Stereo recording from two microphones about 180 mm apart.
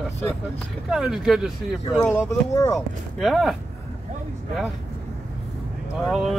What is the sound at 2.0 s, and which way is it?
Speech, 15° left (ahead or behind).